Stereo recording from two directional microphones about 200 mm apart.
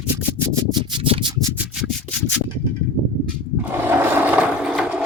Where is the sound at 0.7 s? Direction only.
25° right (ahead or behind).